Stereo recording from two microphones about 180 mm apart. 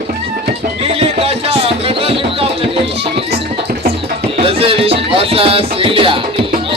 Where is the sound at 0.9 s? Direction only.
35° right (ahead or behind).